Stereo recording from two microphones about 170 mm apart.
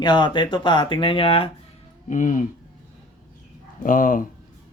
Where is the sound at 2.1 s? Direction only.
50° left (ahead or behind).